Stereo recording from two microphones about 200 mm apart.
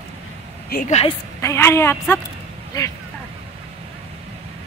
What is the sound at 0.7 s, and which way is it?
Speech, 45° left (ahead or behind).